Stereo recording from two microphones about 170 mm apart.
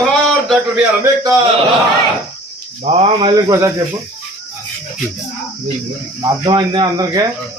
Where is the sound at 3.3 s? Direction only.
20° right (ahead or behind).